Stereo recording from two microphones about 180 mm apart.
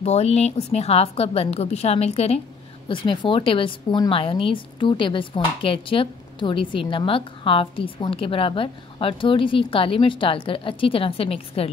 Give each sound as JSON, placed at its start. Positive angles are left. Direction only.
{"t": 0.0, "sound": "a woman's voice", "side_deg": 35}